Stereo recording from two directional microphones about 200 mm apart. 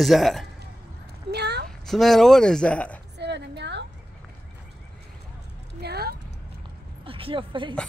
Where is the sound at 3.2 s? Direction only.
60° right (ahead or behind).